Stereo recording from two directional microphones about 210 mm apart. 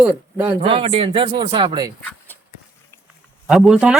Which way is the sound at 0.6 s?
25° right (ahead or behind).